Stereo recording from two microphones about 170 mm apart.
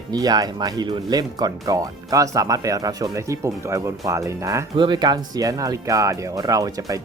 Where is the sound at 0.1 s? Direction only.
25° right (ahead or behind).